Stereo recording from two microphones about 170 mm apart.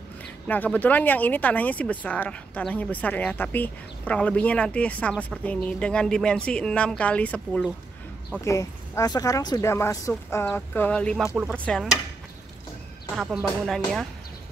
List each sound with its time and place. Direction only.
0.5 s speech: 10° left (ahead or behind)
8.5 s speech: 20° left (ahead or behind); by 12.0 s centre (ahead or behind)
13.1 s speech: centre (ahead or behind)